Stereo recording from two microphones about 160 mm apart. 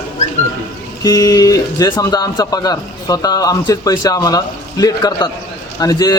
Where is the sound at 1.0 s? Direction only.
20° left (ahead or behind).